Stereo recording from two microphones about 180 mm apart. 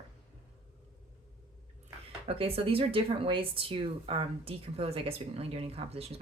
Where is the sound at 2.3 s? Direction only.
30° right (ahead or behind).